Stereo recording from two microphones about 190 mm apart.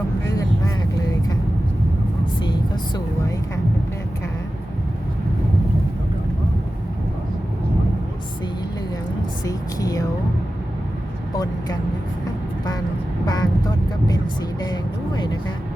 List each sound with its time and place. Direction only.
0.3 s vehicle: 15° left (ahead or behind)
2.4 s vehicle: 25° left (ahead or behind)
9.4 s speech: 20° left (ahead or behind)
13.2 s vehicle: 20° left (ahead or behind)
14.6 s vehicle: 20° left (ahead or behind)